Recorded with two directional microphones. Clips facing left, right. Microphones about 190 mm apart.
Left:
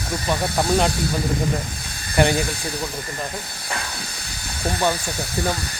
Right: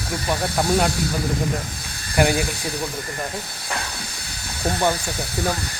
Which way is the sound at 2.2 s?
5° right (ahead or behind).